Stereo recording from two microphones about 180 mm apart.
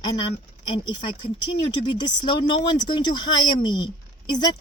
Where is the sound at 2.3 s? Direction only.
25° left (ahead or behind).